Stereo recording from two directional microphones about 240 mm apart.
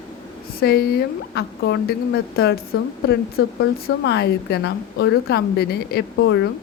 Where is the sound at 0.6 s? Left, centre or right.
Left.